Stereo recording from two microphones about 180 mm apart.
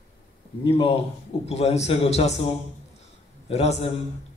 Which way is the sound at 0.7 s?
30° left (ahead or behind).